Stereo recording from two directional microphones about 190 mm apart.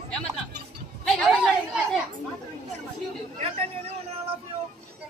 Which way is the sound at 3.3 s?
30° right (ahead or behind).